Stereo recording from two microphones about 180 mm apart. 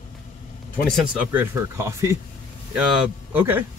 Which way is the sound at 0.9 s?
Centre (ahead or behind).